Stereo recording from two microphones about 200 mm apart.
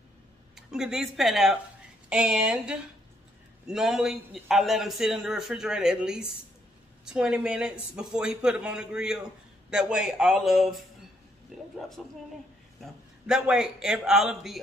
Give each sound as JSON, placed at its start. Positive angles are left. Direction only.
{"t": 0.6, "sound": "a man's voice", "side_deg": -5}
{"t": 12.0, "sound": "a man's voice", "side_deg": 0}